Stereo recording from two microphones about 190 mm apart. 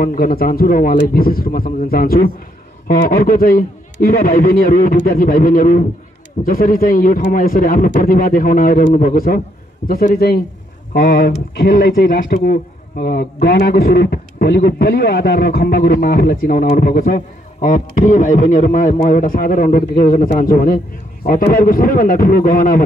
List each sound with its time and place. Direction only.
0.0 s speech: 50° left (ahead or behind)